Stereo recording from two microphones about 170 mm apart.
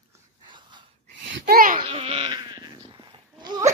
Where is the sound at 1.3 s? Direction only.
60° right (ahead or behind).